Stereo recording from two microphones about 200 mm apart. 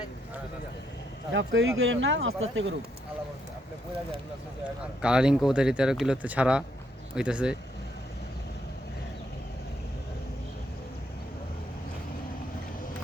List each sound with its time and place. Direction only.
1.3 s speech: 75° right (ahead or behind)
5.0 s speech: 5° right (ahead or behind)